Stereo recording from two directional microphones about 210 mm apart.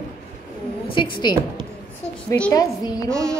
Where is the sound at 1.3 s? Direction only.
20° left (ahead or behind).